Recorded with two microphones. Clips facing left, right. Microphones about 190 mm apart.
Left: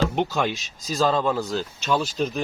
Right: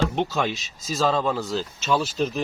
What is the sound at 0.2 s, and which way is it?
Speech, centre (ahead or behind).